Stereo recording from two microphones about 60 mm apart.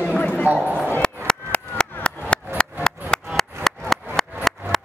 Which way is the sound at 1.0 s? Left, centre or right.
Centre.